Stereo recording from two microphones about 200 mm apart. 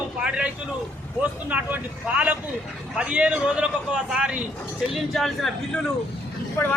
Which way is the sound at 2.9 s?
5° right (ahead or behind).